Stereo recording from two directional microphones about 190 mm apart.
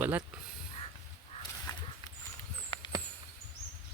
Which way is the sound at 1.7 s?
20° left (ahead or behind).